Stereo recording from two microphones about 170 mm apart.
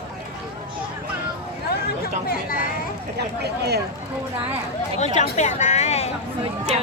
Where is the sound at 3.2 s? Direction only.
75° right (ahead or behind).